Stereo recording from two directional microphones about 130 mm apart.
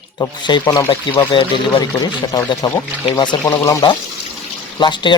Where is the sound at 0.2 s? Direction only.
35° left (ahead or behind).